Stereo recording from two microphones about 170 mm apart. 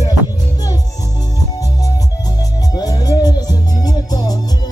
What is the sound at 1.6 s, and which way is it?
Music, 20° left (ahead or behind).